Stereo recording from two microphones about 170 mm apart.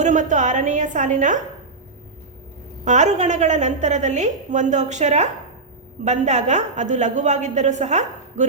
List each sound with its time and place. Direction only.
0.0 s a woman's voice: 45° right (ahead or behind)
2.8 s a woman's voice: 45° right (ahead or behind)